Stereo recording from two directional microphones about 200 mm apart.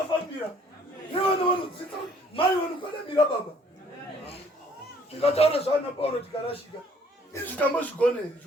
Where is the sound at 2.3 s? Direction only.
30° left (ahead or behind).